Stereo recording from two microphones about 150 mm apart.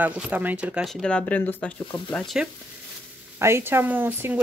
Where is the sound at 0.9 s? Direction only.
5° left (ahead or behind).